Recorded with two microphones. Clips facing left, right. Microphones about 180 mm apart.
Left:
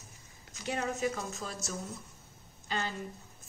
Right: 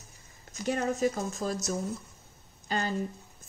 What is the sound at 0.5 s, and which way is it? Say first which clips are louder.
Speech: right 5 dB; 45° right (ahead or behind).